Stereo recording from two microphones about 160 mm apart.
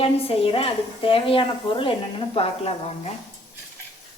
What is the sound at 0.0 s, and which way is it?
A woman's voice, 35° left (ahead or behind).